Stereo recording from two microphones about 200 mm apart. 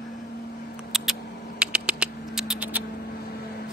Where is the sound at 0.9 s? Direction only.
Centre (ahead or behind).